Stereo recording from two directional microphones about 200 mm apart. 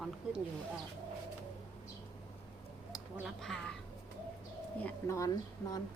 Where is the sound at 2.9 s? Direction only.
Centre (ahead or behind).